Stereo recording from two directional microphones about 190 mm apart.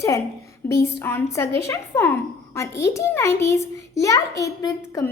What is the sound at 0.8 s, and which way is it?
A child's voice, 15° left (ahead or behind).